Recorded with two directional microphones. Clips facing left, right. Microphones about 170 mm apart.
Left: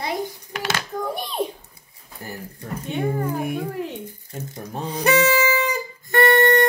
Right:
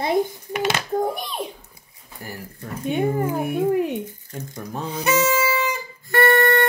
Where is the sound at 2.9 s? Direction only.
20° right (ahead or behind).